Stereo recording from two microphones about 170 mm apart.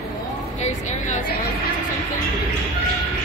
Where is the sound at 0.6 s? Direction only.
45° left (ahead or behind).